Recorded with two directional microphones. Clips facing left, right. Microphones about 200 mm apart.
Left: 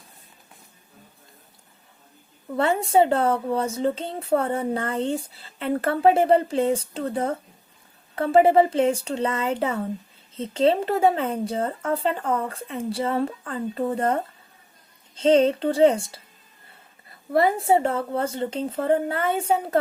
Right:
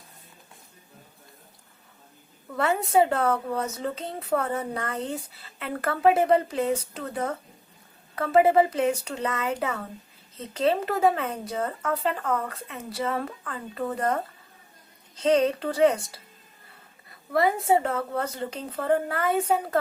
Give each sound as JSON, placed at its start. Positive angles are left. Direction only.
{"t": 2.5, "sound": "speech", "side_deg": 25}
{"t": 17.3, "sound": "speech", "side_deg": 30}